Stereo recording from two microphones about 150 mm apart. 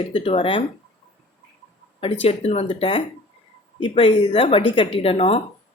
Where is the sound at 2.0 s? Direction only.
40° left (ahead or behind).